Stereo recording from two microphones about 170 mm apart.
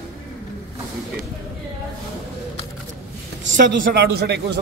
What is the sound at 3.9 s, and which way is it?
Speech, 70° right (ahead or behind).